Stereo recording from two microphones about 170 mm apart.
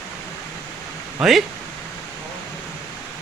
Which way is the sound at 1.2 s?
Centre (ahead or behind).